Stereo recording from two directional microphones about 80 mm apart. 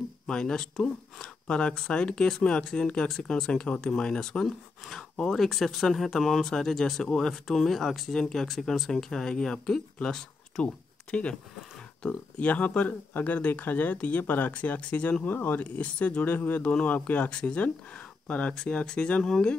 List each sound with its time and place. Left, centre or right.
0.3 s speech: centre